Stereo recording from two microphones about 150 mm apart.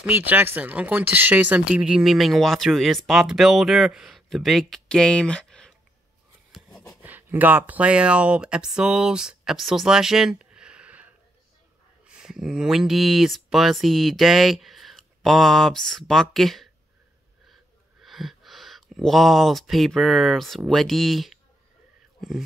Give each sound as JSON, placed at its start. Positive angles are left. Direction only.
{"t": 0.0, "sound": "speech", "side_deg": -10}
{"t": 7.0, "sound": "speech", "side_deg": -10}
{"t": 12.1, "sound": "speech", "side_deg": -5}
{"t": 18.0, "sound": "speech", "side_deg": 0}